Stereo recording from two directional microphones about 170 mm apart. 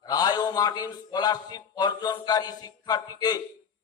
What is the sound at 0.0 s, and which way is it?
A man's voice, 25° left (ahead or behind).